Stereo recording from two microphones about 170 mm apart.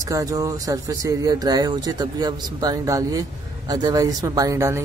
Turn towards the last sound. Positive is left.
turn(degrees=-15)  # may be behind; listen again after turning